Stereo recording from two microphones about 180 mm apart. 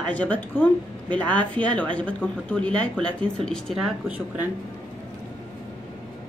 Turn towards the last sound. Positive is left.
turn(degrees=-10)  # may be behind; listen again after turning